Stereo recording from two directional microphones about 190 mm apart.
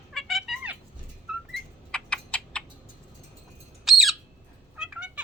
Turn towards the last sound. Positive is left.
turn(degrees=-5)  # may be behind; listen again after turning